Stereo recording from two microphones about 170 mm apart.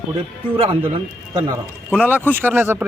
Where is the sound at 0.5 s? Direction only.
30° right (ahead or behind).